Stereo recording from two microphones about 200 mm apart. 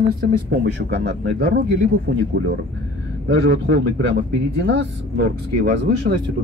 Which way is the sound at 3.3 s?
55° right (ahead or behind).